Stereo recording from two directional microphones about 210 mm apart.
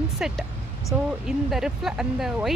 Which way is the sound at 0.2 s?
5° right (ahead or behind).